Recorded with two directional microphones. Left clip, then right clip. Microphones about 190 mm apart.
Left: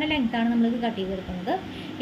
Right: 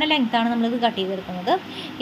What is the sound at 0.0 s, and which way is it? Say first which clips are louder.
A woman's voice: right 5 dB; 20° right (ahead or behind).